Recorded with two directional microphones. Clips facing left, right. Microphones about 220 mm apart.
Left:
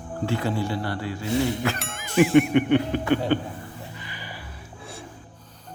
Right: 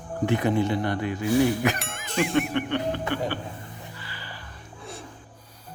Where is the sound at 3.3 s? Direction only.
20° left (ahead or behind).